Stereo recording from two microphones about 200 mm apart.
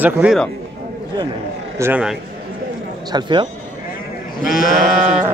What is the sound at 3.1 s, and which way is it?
Speech, 20° right (ahead or behind).